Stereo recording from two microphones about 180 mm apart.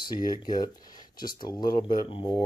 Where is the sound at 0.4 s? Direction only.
20° left (ahead or behind).